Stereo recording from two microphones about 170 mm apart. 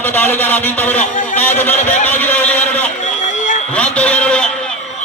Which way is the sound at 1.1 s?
50° left (ahead or behind).